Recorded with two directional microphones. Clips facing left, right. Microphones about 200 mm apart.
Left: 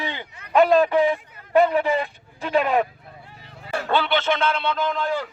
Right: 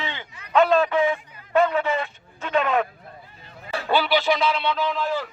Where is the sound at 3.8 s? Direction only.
5° right (ahead or behind).